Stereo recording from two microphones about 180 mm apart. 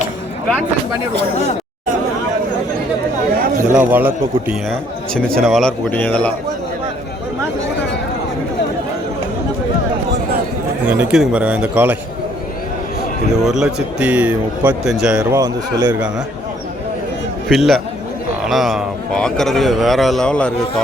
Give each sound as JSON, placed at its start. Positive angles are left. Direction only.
{"t": 3.6, "sound": "a man's voice", "side_deg": -45}
{"t": 3.9, "sound": "a man's voice", "side_deg": -10}
{"t": 4.7, "sound": "a man's voice", "side_deg": 5}
{"t": 10.8, "sound": "a man's voice", "side_deg": -5}
{"t": 13.4, "sound": "a man's voice", "side_deg": -5}
{"t": 15.4, "sound": "a man's voice", "side_deg": -20}
{"t": 17.5, "sound": "a man's voice", "side_deg": 0}